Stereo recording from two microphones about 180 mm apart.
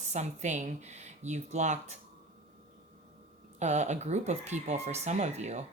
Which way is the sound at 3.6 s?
40° right (ahead or behind).